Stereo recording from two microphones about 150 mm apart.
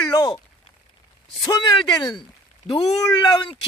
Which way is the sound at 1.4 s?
30° left (ahead or behind).